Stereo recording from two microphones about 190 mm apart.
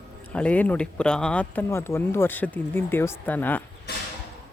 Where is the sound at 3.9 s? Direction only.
60° left (ahead or behind).